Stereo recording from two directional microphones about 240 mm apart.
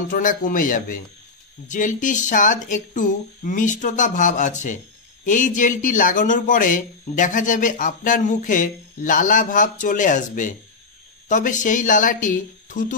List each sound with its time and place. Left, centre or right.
0.1 s speech: left